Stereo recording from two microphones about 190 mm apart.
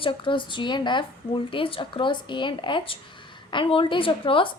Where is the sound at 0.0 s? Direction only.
25° left (ahead or behind).